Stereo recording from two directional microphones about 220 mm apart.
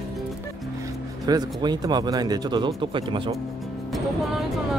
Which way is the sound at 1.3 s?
20° right (ahead or behind).